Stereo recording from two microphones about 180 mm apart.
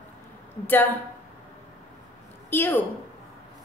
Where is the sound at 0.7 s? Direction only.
10° left (ahead or behind).